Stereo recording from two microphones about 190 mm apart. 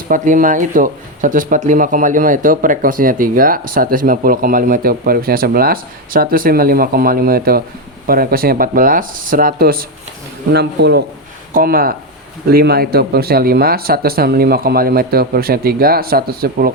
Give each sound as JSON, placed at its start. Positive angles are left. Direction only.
{"t": 0.1, "sound": "speech", "side_deg": -45}
{"t": 10.5, "sound": "speech", "side_deg": -60}
{"t": 11.5, "sound": "speech", "side_deg": -50}